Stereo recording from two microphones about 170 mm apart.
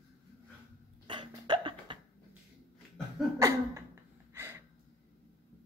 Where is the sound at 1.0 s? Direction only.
25° right (ahead or behind).